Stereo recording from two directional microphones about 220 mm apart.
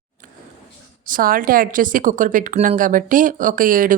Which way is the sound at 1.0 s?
40° right (ahead or behind).